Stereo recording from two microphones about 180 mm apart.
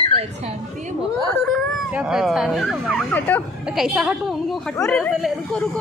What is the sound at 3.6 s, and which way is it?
Speech, 5° right (ahead or behind).